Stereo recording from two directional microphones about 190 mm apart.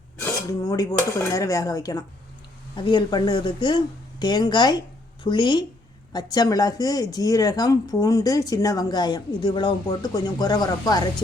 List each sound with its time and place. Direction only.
0.2 s speech: 20° left (ahead or behind)